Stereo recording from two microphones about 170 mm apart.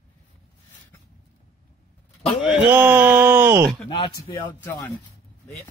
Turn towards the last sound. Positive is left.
turn(degrees=10)  # may be behind; listen again after turning